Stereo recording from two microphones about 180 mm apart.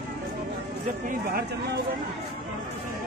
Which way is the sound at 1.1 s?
55° right (ahead or behind).